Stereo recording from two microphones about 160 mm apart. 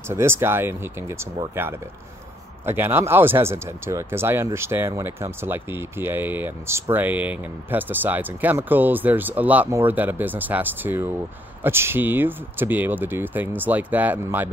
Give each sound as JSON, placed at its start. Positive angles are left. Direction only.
{"t": 0.0, "sound": "speech", "side_deg": -15}